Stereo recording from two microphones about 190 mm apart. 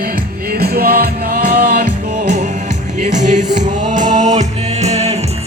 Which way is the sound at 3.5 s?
40° right (ahead or behind).